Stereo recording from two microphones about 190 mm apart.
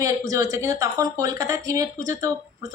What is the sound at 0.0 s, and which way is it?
A woman's voice, 15° right (ahead or behind).